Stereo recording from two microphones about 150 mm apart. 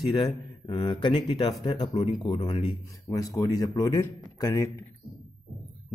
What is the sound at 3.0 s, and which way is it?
A man's voice, 20° left (ahead or behind).